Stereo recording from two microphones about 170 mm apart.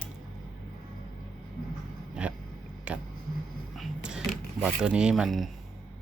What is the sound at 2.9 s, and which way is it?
Speech, 5° right (ahead or behind).